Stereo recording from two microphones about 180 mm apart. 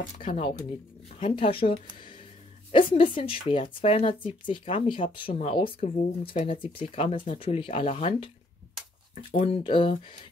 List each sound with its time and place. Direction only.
1.2 s speech: 30° left (ahead or behind)
9.1 s speech: 50° left (ahead or behind)
9.5 s speech: 30° left (ahead or behind)